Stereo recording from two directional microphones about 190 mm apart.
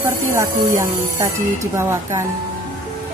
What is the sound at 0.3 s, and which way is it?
A woman's voice, 15° right (ahead or behind).